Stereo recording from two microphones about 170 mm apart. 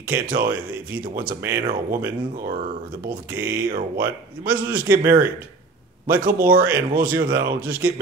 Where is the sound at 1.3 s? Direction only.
15° right (ahead or behind).